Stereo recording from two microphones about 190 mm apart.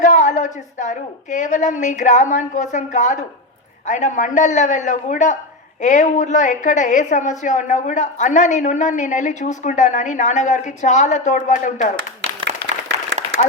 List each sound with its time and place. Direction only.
0.0 s a woman's voice: 40° left (ahead or behind)